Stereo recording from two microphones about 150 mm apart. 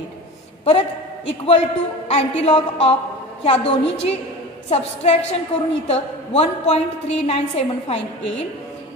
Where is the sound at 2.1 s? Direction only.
45° left (ahead or behind).